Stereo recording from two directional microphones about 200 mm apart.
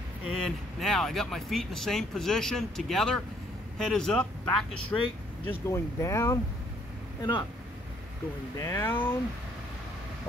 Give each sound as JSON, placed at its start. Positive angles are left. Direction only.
{"t": 0.4, "sound": "speech", "side_deg": 0}
{"t": 5.5, "sound": "speech", "side_deg": 15}
{"t": 8.5, "sound": "speech", "side_deg": 15}